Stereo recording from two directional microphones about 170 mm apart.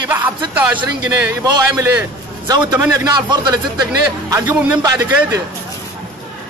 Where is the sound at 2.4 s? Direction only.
25° right (ahead or behind).